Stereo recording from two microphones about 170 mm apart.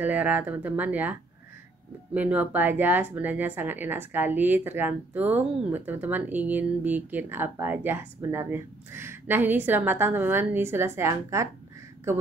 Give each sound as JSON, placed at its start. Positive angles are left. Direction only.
{"t": 0.0, "sound": "speech", "side_deg": -10}
{"t": 2.1, "sound": "speech", "side_deg": -10}